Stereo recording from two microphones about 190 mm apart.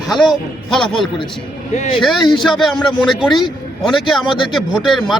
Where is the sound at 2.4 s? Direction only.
Centre (ahead or behind).